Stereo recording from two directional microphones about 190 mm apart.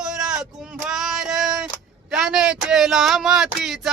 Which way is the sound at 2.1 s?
5° right (ahead or behind).